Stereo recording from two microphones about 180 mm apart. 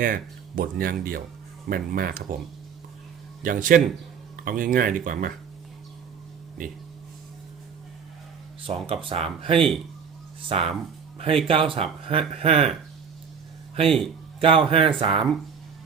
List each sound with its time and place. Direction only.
0.0 s speech: 50° right (ahead or behind)
3.4 s speech: 50° right (ahead or behind)
8.6 s speech: 30° right (ahead or behind)
9.6 s speech: centre (ahead or behind)
10.5 s speech: 35° right (ahead or behind)
13.8 s speech: centre (ahead or behind)
14.4 s speech: 30° right (ahead or behind)